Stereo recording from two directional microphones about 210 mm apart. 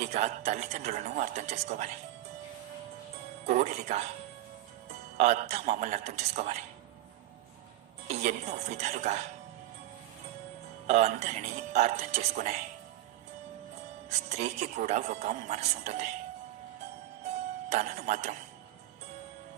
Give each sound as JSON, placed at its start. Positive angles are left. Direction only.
{"t": 0.0, "sound": "a woman's voice", "side_deg": -35}
{"t": 3.4, "sound": "a woman's voice", "side_deg": -35}
{"t": 5.1, "sound": "a woman's voice", "side_deg": -35}
{"t": 8.0, "sound": "a woman's voice", "side_deg": -35}
{"t": 10.8, "sound": "a woman's voice", "side_deg": -35}
{"t": 14.2, "sound": "a woman's voice", "side_deg": -30}
{"t": 17.7, "sound": "a woman's voice", "side_deg": -35}